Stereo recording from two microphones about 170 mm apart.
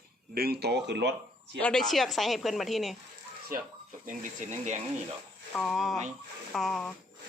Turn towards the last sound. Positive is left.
turn(degrees=0)  # may be behind; listen again after turning